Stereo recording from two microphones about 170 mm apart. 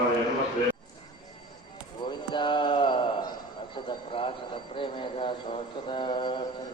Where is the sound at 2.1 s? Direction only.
25° left (ahead or behind).